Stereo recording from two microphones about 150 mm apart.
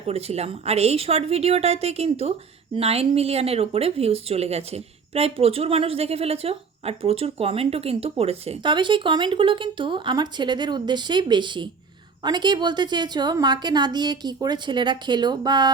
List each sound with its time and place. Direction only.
0.1 s a woman's voice: 45° right (ahead or behind); by 15.7 s 25° right (ahead or behind)